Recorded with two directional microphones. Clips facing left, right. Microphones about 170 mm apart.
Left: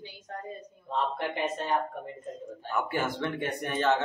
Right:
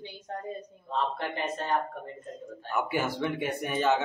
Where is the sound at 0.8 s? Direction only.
15° left (ahead or behind).